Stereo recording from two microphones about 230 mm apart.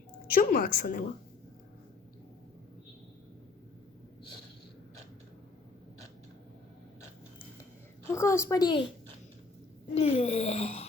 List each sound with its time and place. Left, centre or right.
0.3 s a woman's voice: left
8.0 s a woman's voice: centre
9.9 s speech: left